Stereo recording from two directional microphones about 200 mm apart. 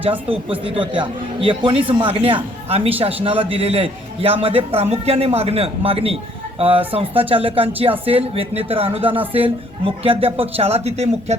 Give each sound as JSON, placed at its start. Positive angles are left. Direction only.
{"t": 0.3, "sound": "speech", "side_deg": -25}